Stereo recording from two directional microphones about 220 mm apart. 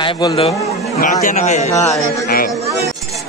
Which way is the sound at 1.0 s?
35° left (ahead or behind).